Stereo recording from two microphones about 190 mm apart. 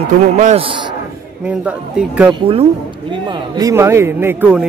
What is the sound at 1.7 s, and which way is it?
Speech, 5° right (ahead or behind).